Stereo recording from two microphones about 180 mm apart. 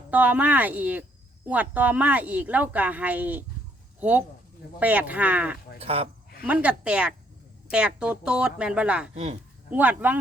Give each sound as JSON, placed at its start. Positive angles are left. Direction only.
{"t": 0.1, "sound": "speech", "side_deg": -10}
{"t": 4.8, "sound": "speech", "side_deg": -10}
{"t": 5.8, "sound": "speech", "side_deg": -35}
{"t": 6.4, "sound": "speech", "side_deg": -10}
{"t": 9.1, "sound": "speech", "side_deg": -30}
{"t": 9.6, "sound": "speech", "side_deg": -10}